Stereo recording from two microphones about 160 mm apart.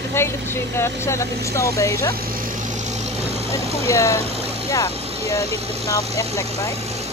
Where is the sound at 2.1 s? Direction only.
65° right (ahead or behind); by 3.3 s 45° right (ahead or behind).